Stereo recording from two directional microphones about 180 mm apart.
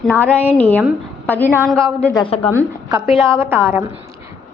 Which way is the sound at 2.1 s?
30° left (ahead or behind).